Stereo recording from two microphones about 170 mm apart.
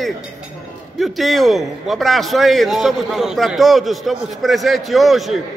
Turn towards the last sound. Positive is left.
turn(degrees=0)  # may be behind; listen again after turning